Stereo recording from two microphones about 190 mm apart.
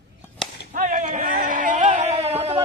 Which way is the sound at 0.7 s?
40° right (ahead or behind).